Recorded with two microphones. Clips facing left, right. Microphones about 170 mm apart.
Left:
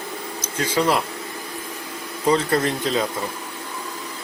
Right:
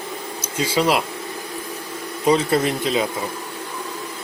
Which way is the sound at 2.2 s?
10° right (ahead or behind).